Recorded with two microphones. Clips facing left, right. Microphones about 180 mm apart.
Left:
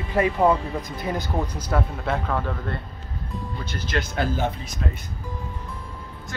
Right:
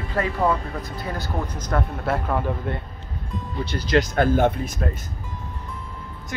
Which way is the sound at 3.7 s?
35° right (ahead or behind).